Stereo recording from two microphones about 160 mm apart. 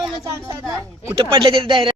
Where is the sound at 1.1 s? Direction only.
30° right (ahead or behind).